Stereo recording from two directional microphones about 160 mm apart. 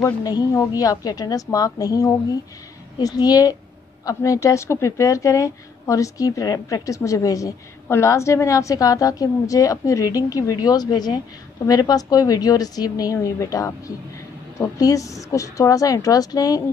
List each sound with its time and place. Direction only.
0.0 s speech: 20° left (ahead or behind)